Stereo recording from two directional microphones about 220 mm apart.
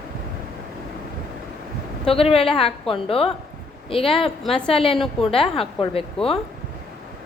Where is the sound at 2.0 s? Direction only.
25° left (ahead or behind).